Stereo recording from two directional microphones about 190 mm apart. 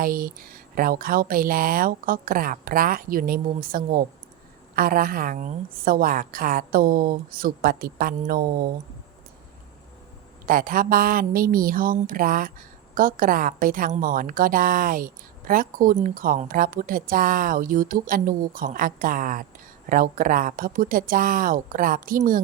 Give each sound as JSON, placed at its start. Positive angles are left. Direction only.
{"t": 0.0, "sound": "a woman's voice", "side_deg": -50}
{"t": 10.4, "sound": "a woman's voice", "side_deg": -45}